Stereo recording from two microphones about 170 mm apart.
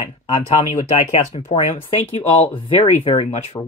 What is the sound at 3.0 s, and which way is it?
Speech, 35° left (ahead or behind).